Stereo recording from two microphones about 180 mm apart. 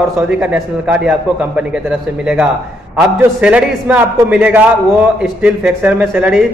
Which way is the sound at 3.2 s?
5° right (ahead or behind).